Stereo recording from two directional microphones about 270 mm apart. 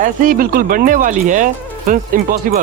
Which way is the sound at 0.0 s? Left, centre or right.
Right.